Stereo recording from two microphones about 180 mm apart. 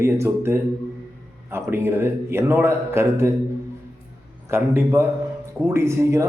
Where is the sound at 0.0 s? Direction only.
15° right (ahead or behind).